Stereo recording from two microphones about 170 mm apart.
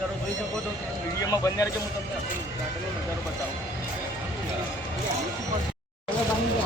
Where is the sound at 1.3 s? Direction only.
20° left (ahead or behind).